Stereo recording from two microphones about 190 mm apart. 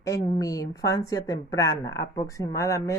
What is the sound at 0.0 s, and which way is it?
A woman's voice, 20° left (ahead or behind).